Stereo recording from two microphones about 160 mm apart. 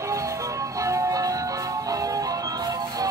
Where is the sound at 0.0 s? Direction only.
20° right (ahead or behind).